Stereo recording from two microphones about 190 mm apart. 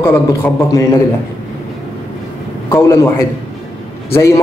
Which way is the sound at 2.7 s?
15° left (ahead or behind).